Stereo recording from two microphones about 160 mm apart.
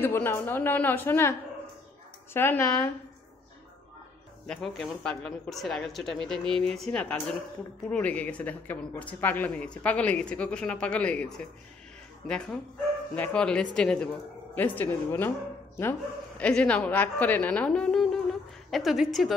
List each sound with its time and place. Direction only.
0.0 s speech: 15° left (ahead or behind)
2.3 s speech: 15° left (ahead or behind)
4.5 s speech: 5° left (ahead or behind)